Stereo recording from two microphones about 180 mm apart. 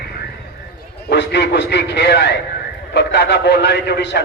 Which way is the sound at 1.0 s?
70° left (ahead or behind).